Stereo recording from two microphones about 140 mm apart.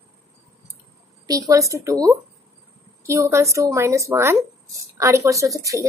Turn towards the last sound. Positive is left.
turn(degrees=-25)  # may be behind; listen again after turning